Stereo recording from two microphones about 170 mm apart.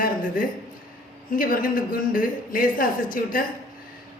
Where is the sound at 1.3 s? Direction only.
55° left (ahead or behind).